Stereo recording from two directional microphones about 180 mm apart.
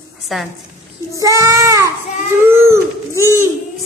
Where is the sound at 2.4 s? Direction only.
15° right (ahead or behind).